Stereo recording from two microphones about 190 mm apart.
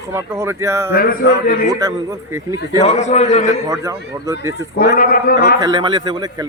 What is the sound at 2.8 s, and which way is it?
Speech, 35° left (ahead or behind).